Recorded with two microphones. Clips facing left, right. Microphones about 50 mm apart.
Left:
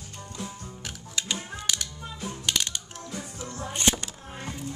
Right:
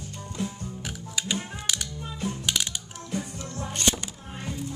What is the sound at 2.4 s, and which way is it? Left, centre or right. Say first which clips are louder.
Gears: left 2 dB; centre.